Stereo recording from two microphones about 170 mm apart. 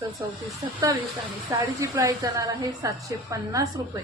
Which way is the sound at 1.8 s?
20° right (ahead or behind).